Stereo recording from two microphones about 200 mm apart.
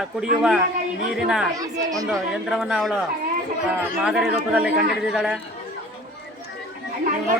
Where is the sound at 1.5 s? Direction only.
15° right (ahead or behind).